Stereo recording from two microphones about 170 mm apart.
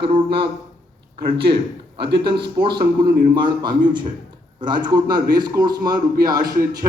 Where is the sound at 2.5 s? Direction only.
25° right (ahead or behind).